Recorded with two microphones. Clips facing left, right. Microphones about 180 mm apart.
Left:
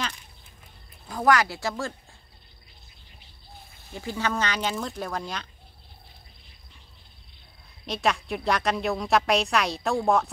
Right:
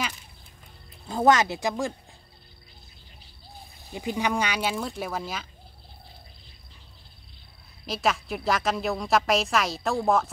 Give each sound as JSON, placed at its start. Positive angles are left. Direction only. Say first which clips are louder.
{"t": 1.0, "sound": "speech", "louder": "right 2 dB", "side_deg": -25}
{"t": 3.9, "sound": "speech", "louder": "right 2 dB", "side_deg": -15}
{"t": 7.8, "sound": "a woman's voice", "louder": "even", "side_deg": 0}